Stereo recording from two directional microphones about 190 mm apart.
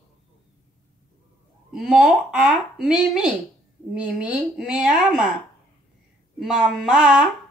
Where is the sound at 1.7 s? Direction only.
Centre (ahead or behind).